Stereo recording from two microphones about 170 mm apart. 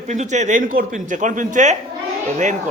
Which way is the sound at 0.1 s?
45° right (ahead or behind).